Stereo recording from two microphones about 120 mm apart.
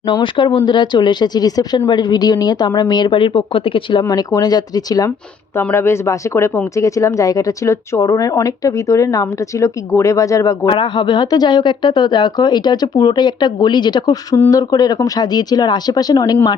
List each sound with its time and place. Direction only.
0.1 s speech: 40° left (ahead or behind)
4.0 s speech: 30° left (ahead or behind)
5.5 s speech: 20° left (ahead or behind)
10.7 s speech: 40° left (ahead or behind)